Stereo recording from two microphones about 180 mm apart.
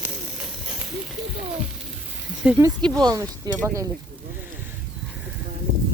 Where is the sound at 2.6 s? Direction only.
25° right (ahead or behind).